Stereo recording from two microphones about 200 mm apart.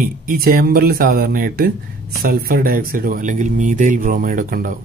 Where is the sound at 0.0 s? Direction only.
45° right (ahead or behind).